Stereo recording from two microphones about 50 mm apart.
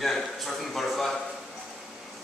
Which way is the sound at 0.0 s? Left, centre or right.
Centre.